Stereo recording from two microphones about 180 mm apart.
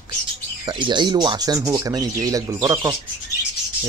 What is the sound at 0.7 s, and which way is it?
Speech, 25° right (ahead or behind).